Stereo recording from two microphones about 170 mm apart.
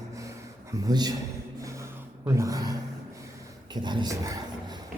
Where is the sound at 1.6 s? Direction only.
15° right (ahead or behind).